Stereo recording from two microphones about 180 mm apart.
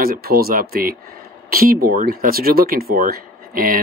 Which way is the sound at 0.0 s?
55° right (ahead or behind).